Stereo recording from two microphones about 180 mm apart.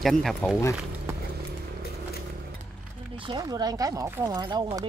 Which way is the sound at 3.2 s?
25° right (ahead or behind).